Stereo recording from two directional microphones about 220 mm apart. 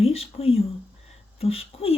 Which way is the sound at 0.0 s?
25° left (ahead or behind).